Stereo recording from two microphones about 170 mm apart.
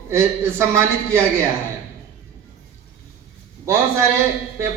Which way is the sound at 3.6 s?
15° right (ahead or behind).